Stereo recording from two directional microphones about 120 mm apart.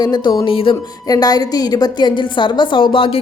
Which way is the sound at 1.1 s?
30° left (ahead or behind).